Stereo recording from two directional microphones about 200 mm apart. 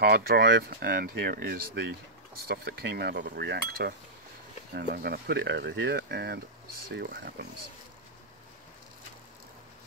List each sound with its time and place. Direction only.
0.0 s speech: 50° right (ahead or behind)